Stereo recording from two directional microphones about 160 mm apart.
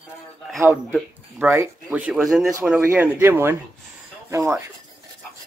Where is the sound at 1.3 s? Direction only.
15° right (ahead or behind).